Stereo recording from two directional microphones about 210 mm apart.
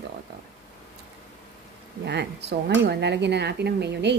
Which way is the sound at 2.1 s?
55° right (ahead or behind).